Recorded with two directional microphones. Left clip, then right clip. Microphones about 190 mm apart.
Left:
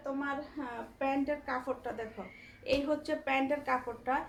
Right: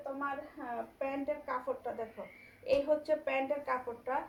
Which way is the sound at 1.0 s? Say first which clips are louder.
Left 6 dB; 30° left (ahead or behind).